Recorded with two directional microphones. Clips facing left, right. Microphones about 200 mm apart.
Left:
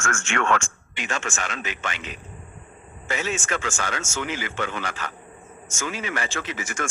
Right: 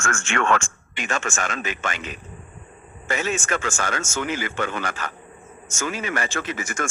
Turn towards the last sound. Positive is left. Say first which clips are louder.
# right 2 dB
turn(degrees=-45)  # may be behind; listen again after turning